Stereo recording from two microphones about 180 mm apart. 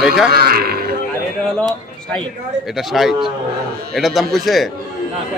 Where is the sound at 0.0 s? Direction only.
5° right (ahead or behind).